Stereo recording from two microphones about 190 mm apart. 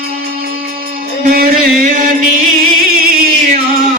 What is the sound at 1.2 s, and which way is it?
Chant, 50° right (ahead or behind).